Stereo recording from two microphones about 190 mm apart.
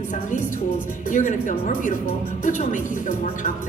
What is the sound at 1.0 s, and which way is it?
A woman's voice, 40° left (ahead or behind).